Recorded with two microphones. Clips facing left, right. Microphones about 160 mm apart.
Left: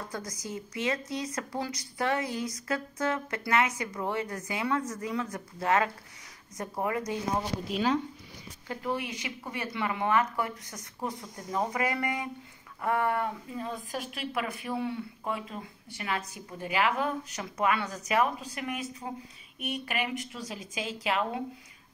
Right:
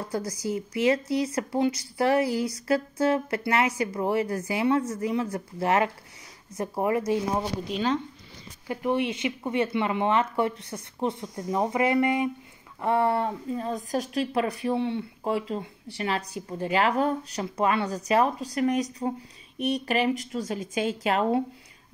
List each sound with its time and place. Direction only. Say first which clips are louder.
0.1 s speech: right 8 dB; 30° right (ahead or behind)
7.6 s speech: right 1 dB; 5° left (ahead or behind)
8.6 s speech: right 7 dB; 20° right (ahead or behind)
20.4 s a woman's voice: right 9 dB; 50° right (ahead or behind)